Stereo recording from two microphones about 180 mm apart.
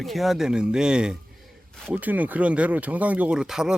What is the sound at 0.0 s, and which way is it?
Speech, centre (ahead or behind).